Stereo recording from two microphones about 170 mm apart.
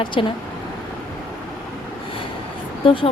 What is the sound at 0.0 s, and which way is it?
Speech, 30° left (ahead or behind).